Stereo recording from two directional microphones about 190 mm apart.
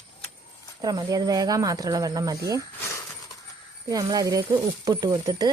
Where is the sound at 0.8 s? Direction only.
20° right (ahead or behind).